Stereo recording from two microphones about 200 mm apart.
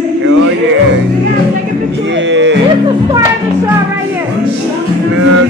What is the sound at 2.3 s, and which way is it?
Livestock, 65° right (ahead or behind).